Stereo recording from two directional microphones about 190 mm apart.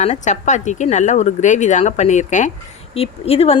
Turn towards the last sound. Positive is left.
turn(degrees=30)  # may be behind; listen again after turning